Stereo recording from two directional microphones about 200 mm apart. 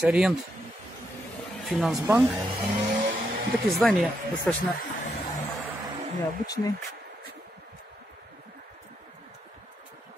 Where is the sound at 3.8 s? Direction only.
Centre (ahead or behind).